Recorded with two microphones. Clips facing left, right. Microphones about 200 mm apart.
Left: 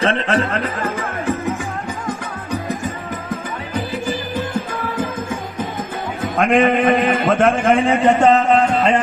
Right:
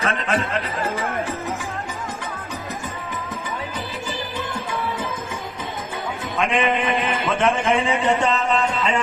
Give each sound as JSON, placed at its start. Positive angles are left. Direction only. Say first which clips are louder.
{"t": 0.0, "sound": "speech", "louder": "left 5 dB", "side_deg": 35}
{"t": 2.5, "sound": "music", "louder": "left 7 dB", "side_deg": 50}
{"t": 6.2, "sound": "a man's voice", "louder": "left 7 dB", "side_deg": 50}